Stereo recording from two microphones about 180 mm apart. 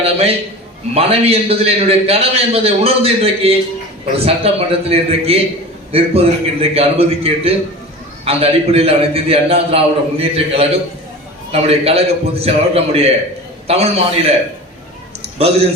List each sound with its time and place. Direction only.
0.0 s a man's voice: 35° right (ahead or behind)
15.4 s a man's voice: 35° right (ahead or behind)